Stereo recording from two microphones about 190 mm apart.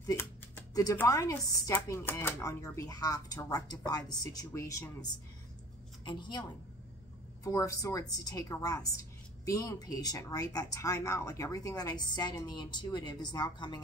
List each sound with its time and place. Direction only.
0.0 s a sound: 15° left (ahead or behind)
0.7 s chopping: 15° left (ahead or behind)
6.0 s a woman's voice: 25° left (ahead or behind)
7.4 s chopping: 15° left (ahead or behind)
8.2 s a woman's voice: 20° left (ahead or behind)